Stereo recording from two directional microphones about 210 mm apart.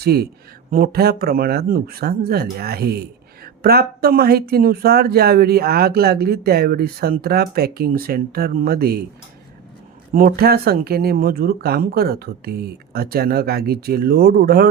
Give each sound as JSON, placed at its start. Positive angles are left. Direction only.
{"t": 0.0, "sound": "speech", "side_deg": -50}
{"t": 10.1, "sound": "speech", "side_deg": -45}